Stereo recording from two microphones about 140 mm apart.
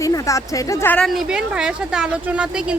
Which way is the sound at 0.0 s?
25° left (ahead or behind).